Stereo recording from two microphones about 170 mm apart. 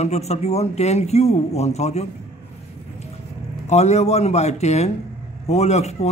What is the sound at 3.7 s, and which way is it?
A man's voice, 40° left (ahead or behind).